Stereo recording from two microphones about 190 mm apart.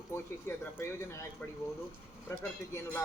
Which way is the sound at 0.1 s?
10° left (ahead or behind).